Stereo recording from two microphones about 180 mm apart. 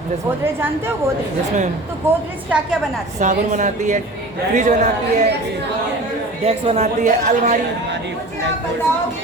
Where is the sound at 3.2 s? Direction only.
45° right (ahead or behind).